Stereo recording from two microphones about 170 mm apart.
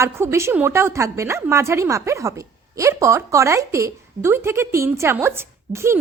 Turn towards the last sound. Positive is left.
turn(degrees=-15)  # may be behind; listen again after turning